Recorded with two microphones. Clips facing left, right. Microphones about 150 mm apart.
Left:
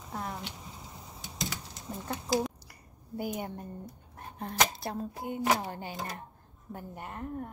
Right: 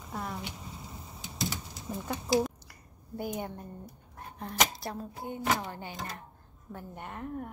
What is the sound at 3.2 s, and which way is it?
Speech, 10° left (ahead or behind).